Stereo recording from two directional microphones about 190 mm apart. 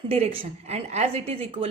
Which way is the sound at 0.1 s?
30° right (ahead or behind).